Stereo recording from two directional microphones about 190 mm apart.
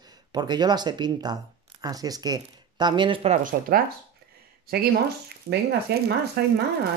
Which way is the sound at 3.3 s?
45° right (ahead or behind).